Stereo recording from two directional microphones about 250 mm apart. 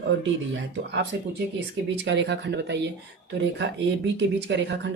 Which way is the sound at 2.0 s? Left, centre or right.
Right.